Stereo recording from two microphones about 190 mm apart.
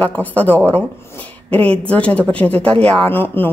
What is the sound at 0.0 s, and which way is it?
Speech, 10° left (ahead or behind).